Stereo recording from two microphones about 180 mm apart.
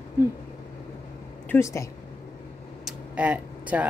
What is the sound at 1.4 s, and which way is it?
Speech, 15° left (ahead or behind).